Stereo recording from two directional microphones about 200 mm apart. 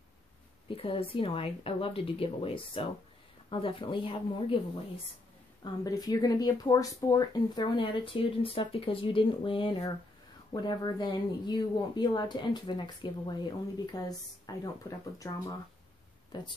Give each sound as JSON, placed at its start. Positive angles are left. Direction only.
{"t": 0.7, "sound": "speech", "side_deg": 25}
{"t": 5.6, "sound": "speech", "side_deg": 20}